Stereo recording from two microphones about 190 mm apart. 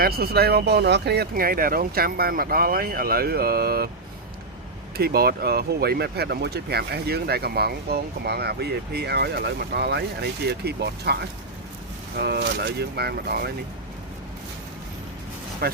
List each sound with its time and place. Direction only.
0.0 s speech: 55° right (ahead or behind)
4.9 s speech: 55° right (ahead or behind)
15.6 s speech: 55° right (ahead or behind)